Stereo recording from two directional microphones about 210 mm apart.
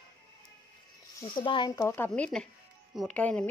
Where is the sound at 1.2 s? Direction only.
20° left (ahead or behind).